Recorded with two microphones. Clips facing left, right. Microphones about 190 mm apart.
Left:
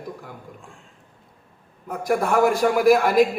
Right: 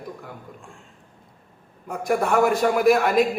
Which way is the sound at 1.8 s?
5° left (ahead or behind).